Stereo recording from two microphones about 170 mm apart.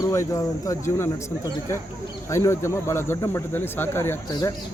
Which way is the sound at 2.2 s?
15° left (ahead or behind).